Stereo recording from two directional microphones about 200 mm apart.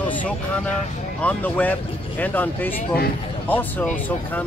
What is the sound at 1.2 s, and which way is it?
Speech, 10° left (ahead or behind).